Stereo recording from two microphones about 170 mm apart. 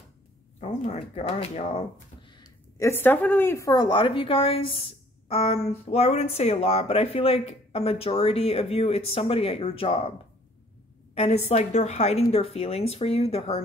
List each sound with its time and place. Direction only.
0.6 s speech: 40° left (ahead or behind)
11.1 s speech: 40° left (ahead or behind)